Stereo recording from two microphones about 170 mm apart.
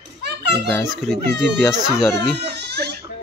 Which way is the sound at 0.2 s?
75° right (ahead or behind).